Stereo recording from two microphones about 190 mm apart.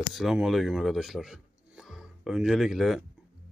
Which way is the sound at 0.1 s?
Centre (ahead or behind).